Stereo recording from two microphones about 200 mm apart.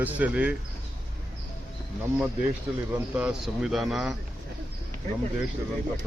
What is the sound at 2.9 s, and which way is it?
A man's voice, 5° right (ahead or behind).